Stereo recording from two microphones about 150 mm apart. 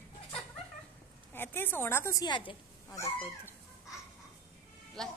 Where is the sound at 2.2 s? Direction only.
30° left (ahead or behind).